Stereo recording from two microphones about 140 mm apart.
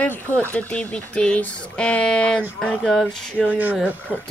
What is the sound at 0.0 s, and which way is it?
Speech, 15° left (ahead or behind).